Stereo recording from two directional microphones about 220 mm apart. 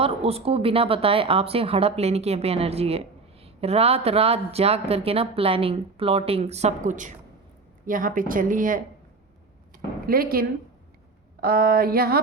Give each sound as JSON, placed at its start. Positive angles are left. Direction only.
{"t": 0.0, "sound": "speech", "side_deg": -25}
{"t": 10.1, "sound": "speech", "side_deg": -40}
{"t": 11.3, "sound": "a sound", "side_deg": -45}